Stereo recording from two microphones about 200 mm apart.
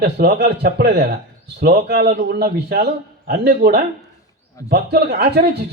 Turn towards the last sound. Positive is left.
turn(degrees=-55)  # may be behind; listen again after turning